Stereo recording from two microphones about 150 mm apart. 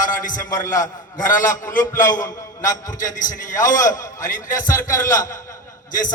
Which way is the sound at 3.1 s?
60° left (ahead or behind).